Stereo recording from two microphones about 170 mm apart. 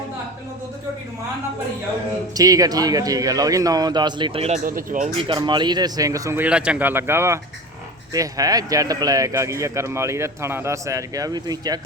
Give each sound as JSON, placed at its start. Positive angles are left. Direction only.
{"t": 2.3, "sound": "speech", "side_deg": -20}
{"t": 5.1, "sound": "speech", "side_deg": -30}